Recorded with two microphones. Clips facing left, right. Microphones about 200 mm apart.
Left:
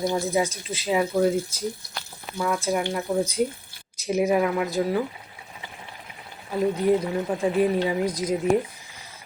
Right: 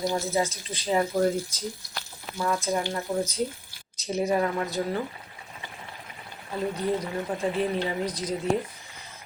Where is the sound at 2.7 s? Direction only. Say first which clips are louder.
Left 3 dB; 15° left (ahead or behind).